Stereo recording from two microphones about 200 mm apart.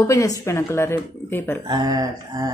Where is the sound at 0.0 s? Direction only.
15° left (ahead or behind).